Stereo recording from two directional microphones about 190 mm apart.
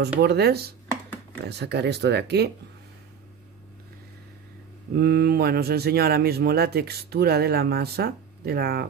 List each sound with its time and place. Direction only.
0.2 s speech: 55° right (ahead or behind)
4.9 s speech: 60° right (ahead or behind)